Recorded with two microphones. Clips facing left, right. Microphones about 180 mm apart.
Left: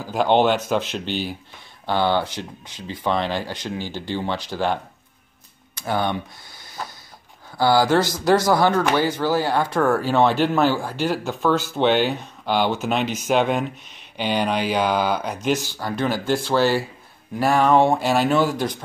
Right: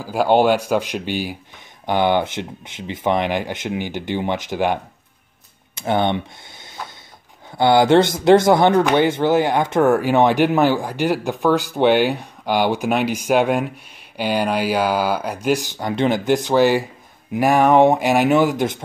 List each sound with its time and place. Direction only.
0.0 s speech: 10° right (ahead or behind)
5.8 s speech: 25° right (ahead or behind)